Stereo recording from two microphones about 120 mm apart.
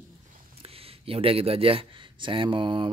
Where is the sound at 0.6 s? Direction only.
55° right (ahead or behind).